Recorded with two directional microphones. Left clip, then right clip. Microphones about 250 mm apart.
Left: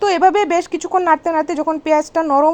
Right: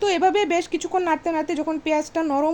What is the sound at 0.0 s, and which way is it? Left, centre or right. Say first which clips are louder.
Speech: left 6 dB; centre.